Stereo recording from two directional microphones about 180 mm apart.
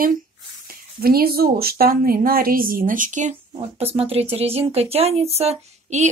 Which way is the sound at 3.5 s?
30° right (ahead or behind).